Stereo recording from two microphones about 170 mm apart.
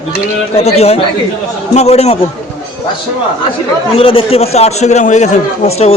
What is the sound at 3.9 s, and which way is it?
A man's voice, 35° left (ahead or behind).